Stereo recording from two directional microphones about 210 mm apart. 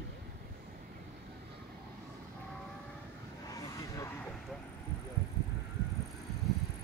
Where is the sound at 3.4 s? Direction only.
15° left (ahead or behind).